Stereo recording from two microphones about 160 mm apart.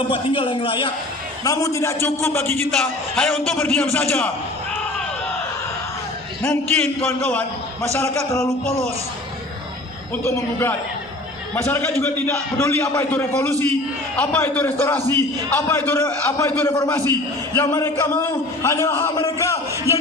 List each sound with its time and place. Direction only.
0.1 s a man's voice: 35° left (ahead or behind)
1.5 s a man's voice: 20° left (ahead or behind)
2.8 s a man's voice: 5° left (ahead or behind)
6.4 s a man's voice: 10° left (ahead or behind)
10.2 s a man's voice: 15° left (ahead or behind)